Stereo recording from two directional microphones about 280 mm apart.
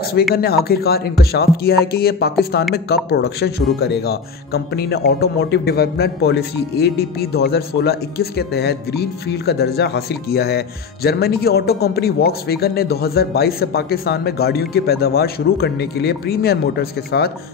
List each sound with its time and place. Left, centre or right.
0.3 s a man's voice: left